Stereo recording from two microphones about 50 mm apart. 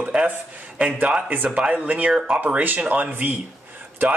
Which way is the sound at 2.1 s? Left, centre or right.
Centre.